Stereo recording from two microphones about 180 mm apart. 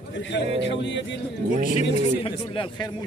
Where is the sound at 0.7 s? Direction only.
90° left.